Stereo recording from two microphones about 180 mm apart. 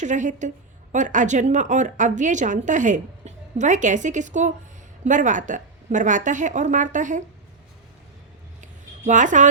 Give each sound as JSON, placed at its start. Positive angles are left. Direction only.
{"t": 0.0, "sound": "speech", "side_deg": -45}
{"t": 9.0, "sound": "speech", "side_deg": -45}